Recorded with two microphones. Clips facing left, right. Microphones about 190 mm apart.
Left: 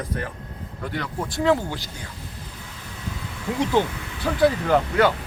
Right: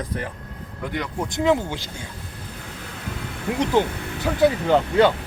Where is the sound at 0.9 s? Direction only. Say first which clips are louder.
Right 1 dB; 20° right (ahead or behind).